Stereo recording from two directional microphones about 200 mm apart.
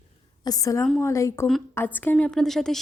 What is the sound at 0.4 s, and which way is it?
A woman's voice, 20° left (ahead or behind).